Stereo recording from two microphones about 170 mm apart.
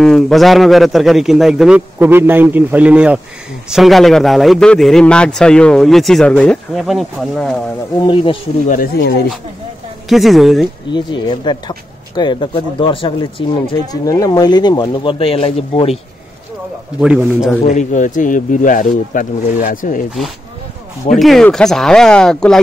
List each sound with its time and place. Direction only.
0.0 s a man's voice: centre (ahead or behind)
8.0 s speech: 30° left (ahead or behind)
8.6 s speech: 60° left (ahead or behind)
10.0 s a man's voice: centre (ahead or behind)
10.9 s speech: 25° left (ahead or behind)
17.0 s a man's voice: 5° right (ahead or behind)
17.6 s speech: 45° left (ahead or behind)
21.2 s a man's voice: centre (ahead or behind)